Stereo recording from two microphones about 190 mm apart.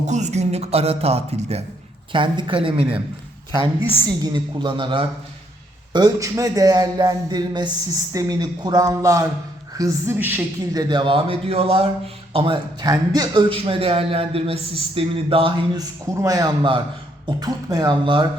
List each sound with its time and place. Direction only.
0.1 s a man's voice: 35° right (ahead or behind)
4.0 s a man's voice: 20° right (ahead or behind)
10.8 s a man's voice: 25° right (ahead or behind)